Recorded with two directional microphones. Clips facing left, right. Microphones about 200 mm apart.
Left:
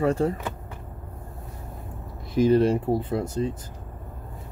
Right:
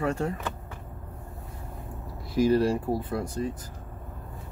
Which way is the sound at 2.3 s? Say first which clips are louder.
Left 3 dB; 20° left (ahead or behind).